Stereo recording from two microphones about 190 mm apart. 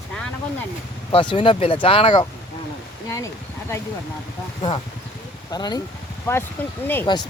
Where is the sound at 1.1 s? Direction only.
25° left (ahead or behind).